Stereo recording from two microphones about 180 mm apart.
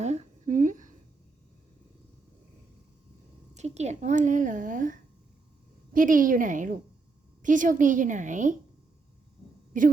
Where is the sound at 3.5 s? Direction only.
40° right (ahead or behind).